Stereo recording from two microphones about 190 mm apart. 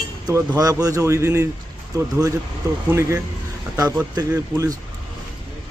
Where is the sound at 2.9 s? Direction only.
15° right (ahead or behind).